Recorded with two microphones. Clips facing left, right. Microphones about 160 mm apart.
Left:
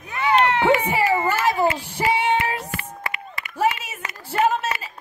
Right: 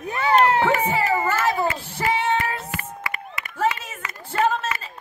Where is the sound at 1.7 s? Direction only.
15° left (ahead or behind).